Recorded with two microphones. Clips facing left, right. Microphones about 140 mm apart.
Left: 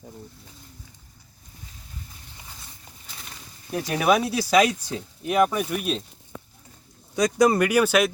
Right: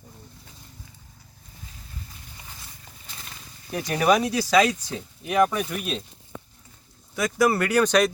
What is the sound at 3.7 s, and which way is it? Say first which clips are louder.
Speech: even; 5° left (ahead or behind).